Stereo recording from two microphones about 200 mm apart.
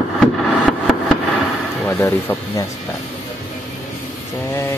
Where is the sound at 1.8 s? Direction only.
10° left (ahead or behind).